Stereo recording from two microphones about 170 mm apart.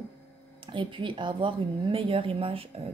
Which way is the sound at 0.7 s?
30° right (ahead or behind).